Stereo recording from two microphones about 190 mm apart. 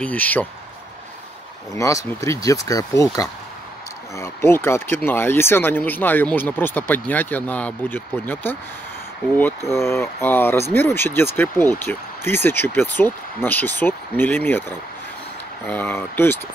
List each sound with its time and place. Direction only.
0.0 s speech: 10° left (ahead or behind)
1.7 s speech: 15° left (ahead or behind)
9.7 s speech: 15° left (ahead or behind)